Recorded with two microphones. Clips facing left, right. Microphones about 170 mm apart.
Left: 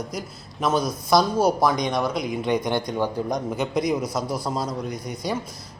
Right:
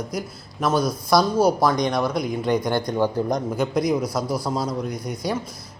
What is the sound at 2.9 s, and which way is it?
Speech, 10° right (ahead or behind).